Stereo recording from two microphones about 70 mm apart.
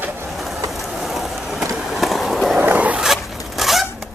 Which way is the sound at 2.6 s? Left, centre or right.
Right.